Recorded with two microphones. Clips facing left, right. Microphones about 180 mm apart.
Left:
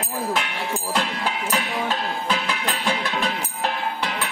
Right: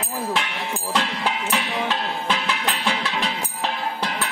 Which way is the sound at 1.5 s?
40° left (ahead or behind).